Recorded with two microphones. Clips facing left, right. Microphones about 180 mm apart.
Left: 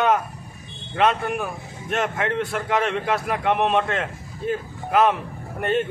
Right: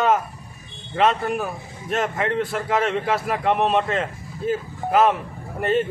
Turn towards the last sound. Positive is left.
turn(degrees=0)  # may be behind; listen again after turning